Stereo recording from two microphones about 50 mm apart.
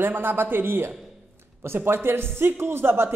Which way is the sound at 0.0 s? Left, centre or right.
Right.